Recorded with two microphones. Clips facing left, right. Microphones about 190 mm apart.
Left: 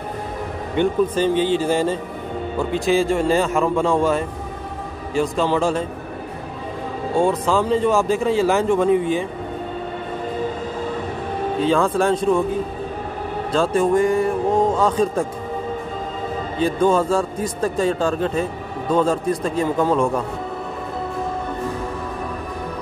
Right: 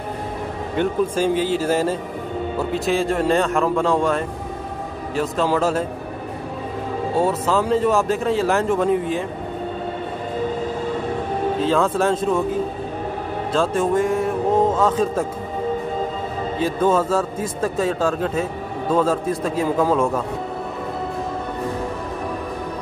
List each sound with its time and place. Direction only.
0.7 s a man's voice: 10° right (ahead or behind)
7.2 s a man's voice: 5° right (ahead or behind)
11.6 s a man's voice: centre (ahead or behind)
13.5 s a man's voice: centre (ahead or behind)
16.5 s a man's voice: centre (ahead or behind)